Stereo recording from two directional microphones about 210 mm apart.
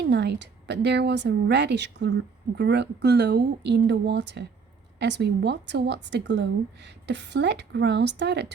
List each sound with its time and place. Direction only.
0.1 s a woman's voice: 55° right (ahead or behind)